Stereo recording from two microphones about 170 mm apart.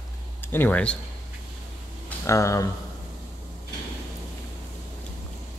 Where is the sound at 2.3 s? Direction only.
20° left (ahead or behind).